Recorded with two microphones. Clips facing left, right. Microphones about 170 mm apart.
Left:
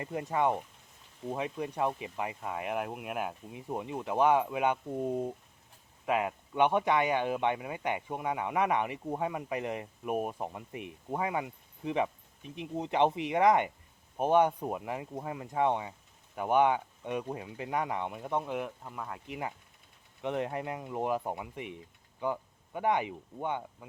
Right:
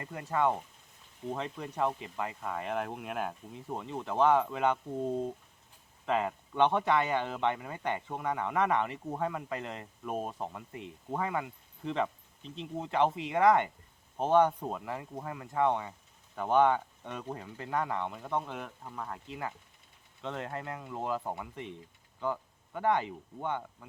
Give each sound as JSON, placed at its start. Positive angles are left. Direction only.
{"t": 0.0, "sound": "speech", "side_deg": 20}